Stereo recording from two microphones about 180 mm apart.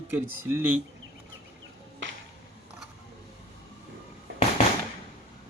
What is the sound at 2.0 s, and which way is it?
Music, 90° right.